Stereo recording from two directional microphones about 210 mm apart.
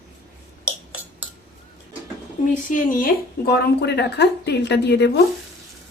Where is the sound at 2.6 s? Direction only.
40° left (ahead or behind).